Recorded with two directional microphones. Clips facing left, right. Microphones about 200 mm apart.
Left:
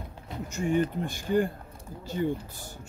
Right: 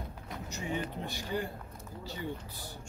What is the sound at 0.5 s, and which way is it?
Speech, 50° left (ahead or behind).